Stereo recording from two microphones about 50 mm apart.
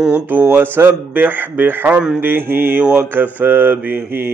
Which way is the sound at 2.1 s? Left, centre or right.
Right.